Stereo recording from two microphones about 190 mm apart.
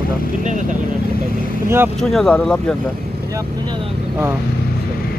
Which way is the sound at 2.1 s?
5° left (ahead or behind).